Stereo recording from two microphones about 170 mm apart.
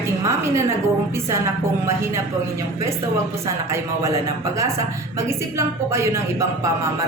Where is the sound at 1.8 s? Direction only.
15° right (ahead or behind).